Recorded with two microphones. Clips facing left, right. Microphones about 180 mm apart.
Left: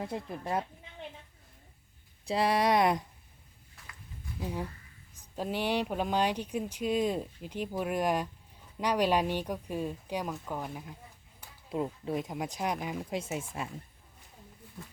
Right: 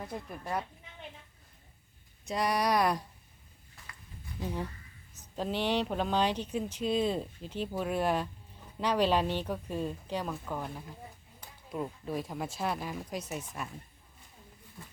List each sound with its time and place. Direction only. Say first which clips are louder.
0.0 s speech: left 4 dB; 25° left (ahead or behind)
2.2 s speech: left 3 dB; 30° left (ahead or behind)
3.8 s a sound: right 1 dB; centre (ahead or behind)
4.4 s speech: even; 10° left (ahead or behind)
11.7 s speech: left 3 dB; 20° left (ahead or behind)